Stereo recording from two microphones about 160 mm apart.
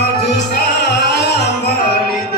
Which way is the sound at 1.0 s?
90° left.